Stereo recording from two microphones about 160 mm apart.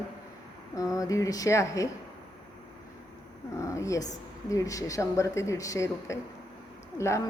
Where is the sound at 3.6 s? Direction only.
20° left (ahead or behind).